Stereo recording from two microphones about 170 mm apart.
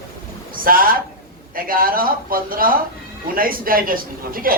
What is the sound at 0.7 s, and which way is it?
A man's voice, 60° right (ahead or behind).